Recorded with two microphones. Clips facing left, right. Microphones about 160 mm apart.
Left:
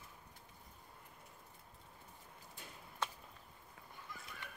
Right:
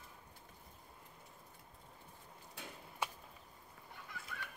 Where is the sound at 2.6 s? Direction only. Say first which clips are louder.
Right 6 dB; 70° right (ahead or behind).